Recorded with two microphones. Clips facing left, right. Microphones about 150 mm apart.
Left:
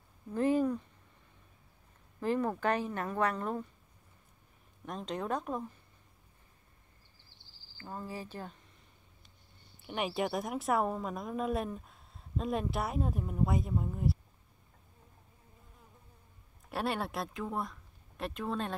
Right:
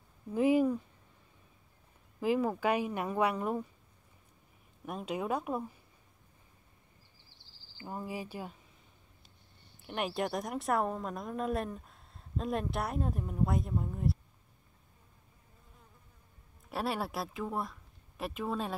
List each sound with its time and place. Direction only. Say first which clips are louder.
0.3 s speech: right 2 dB; 10° right (ahead or behind)
2.1 s speech: right 2 dB; 10° right (ahead or behind)
4.8 s speech: right 1 dB; 10° right (ahead or behind)
7.7 s speech: right 2 dB; 15° right (ahead or behind)
9.8 s a woman's voice: left 1 dB; centre (ahead or behind)
16.6 s speech: even; centre (ahead or behind)